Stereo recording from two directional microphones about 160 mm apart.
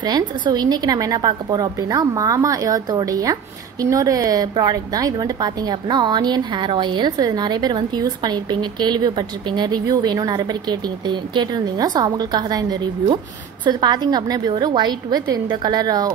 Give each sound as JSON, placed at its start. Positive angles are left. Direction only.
{"t": 0.0, "sound": "a woman's voice", "side_deg": -25}